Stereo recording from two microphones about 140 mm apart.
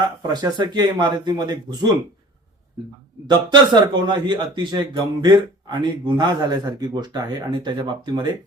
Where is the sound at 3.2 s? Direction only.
30° right (ahead or behind).